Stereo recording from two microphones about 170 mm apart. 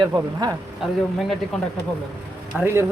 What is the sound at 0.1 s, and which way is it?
Speech, 25° right (ahead or behind).